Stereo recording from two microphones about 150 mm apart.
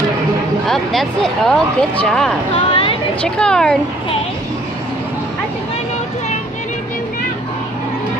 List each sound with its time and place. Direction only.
0.7 s speech: 5° left (ahead or behind)
2.5 s a sound: 40° left (ahead or behind)
3.2 s speech: 5° left (ahead or behind)